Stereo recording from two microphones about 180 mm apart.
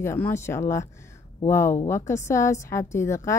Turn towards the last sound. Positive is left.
turn(degrees=15)  # may be behind; listen again after turning